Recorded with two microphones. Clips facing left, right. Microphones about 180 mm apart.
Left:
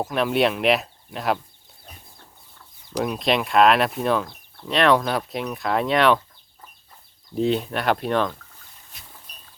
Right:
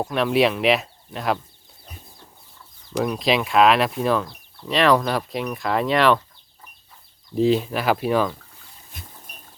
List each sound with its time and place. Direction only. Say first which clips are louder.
0.0 s speech: right 1 dB; centre (ahead or behind)
3.0 s speech: right 1 dB; centre (ahead or behind)
7.3 s speech: right 3 dB; centre (ahead or behind)
8.9 s pig: right 7 dB; 50° right (ahead or behind)